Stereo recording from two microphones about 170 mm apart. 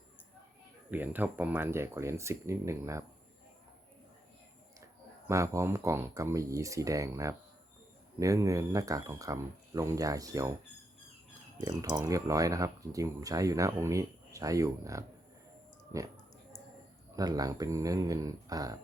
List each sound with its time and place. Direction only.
0.9 s speech: 10° right (ahead or behind)
5.3 s speech: 15° right (ahead or behind)
11.6 s speech: 25° right (ahead or behind)
17.2 s speech: 20° right (ahead or behind)